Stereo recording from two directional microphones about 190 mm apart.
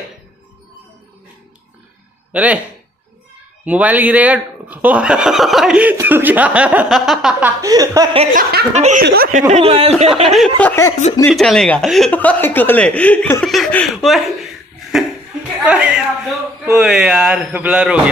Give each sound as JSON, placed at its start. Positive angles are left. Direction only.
{"t": 2.3, "sound": "speech", "side_deg": -10}
{"t": 3.6, "sound": "speech", "side_deg": -10}
{"t": 7.6, "sound": "speech", "side_deg": -20}
{"t": 8.4, "sound": "speech", "side_deg": -55}
{"t": 8.7, "sound": "speech", "side_deg": -35}
{"t": 9.0, "sound": "speech", "side_deg": -55}
{"t": 9.5, "sound": "speech", "side_deg": -30}
{"t": 10.2, "sound": "speech", "side_deg": 0}
{"t": 10.6, "sound": "speech", "side_deg": 10}
{"t": 11.3, "sound": "speech", "side_deg": 0}